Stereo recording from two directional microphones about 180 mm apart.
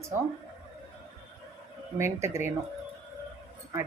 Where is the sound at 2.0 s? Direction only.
15° right (ahead or behind).